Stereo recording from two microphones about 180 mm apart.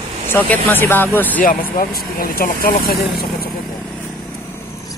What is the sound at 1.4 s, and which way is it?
Speech, 50° left (ahead or behind).